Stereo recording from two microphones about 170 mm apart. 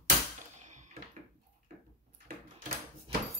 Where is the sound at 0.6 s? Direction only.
45° right (ahead or behind).